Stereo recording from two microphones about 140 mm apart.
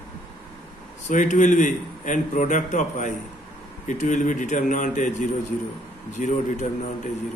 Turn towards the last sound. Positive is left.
turn(degrees=60)  # may be behind; listen again after turning